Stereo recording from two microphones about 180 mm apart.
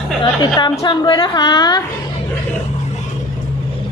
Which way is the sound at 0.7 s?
25° left (ahead or behind).